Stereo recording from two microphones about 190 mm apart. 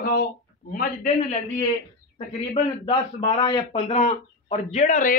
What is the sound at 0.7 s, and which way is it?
Speech, 40° left (ahead or behind).